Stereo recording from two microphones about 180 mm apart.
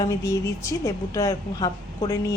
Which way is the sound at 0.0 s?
20° left (ahead or behind).